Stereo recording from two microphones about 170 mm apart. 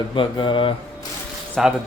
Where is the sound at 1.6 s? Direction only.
Centre (ahead or behind).